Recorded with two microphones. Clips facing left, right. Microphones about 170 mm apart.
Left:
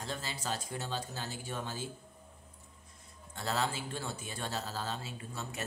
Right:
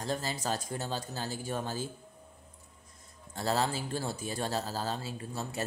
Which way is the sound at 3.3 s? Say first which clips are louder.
Right 4 dB; 35° right (ahead or behind).